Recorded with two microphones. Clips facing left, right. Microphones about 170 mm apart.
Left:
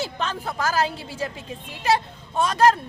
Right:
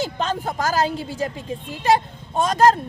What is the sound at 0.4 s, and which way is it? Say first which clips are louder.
Speech: right 1 dB; 45° right (ahead or behind).